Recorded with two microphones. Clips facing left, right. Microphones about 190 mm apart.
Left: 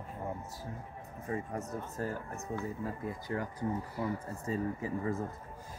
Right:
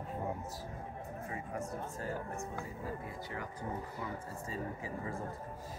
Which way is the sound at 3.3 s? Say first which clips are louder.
Left 7 dB; 40° left (ahead or behind).